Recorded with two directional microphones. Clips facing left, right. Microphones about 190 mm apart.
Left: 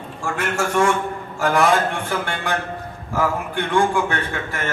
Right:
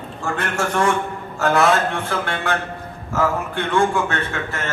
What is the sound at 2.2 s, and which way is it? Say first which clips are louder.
Speech: right 1 dB; 15° left (ahead or behind).